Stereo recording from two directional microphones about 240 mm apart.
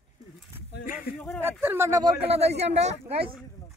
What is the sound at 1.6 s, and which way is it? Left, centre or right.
Speech, centre.